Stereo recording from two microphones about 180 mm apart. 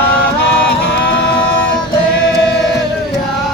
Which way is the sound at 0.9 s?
80° left.